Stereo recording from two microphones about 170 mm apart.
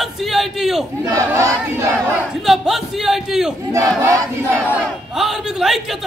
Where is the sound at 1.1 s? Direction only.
15° right (ahead or behind).